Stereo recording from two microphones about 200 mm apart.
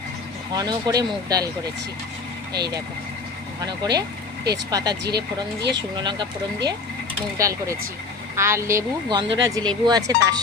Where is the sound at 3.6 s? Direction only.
20° right (ahead or behind).